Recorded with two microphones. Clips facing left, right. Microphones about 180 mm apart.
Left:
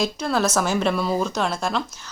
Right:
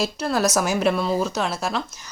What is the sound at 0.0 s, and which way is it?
Speech, 5° right (ahead or behind).